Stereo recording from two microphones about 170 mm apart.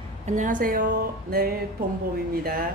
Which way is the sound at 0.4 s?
50° right (ahead or behind).